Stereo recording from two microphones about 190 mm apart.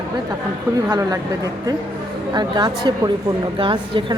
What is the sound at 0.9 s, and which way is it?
Speech, 20° right (ahead or behind).